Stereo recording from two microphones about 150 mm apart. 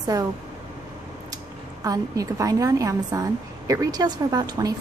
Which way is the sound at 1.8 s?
25° right (ahead or behind).